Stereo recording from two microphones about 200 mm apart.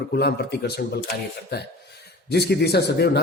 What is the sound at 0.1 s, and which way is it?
Speech, 55° left (ahead or behind).